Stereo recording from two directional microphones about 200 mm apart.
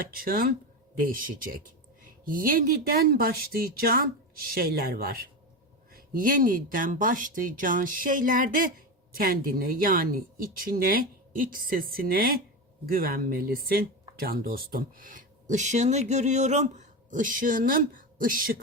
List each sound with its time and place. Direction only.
0.1 s speech: 45° right (ahead or behind)